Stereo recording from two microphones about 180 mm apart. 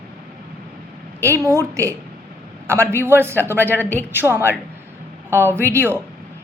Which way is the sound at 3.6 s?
10° left (ahead or behind).